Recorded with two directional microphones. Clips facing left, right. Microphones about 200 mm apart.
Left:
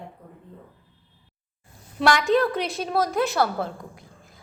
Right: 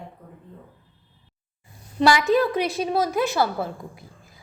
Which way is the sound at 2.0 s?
5° right (ahead or behind).